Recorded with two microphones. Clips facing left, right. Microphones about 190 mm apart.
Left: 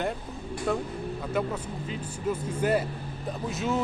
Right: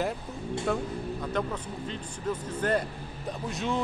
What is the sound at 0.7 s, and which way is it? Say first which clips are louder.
Speech: left 2 dB; centre (ahead or behind).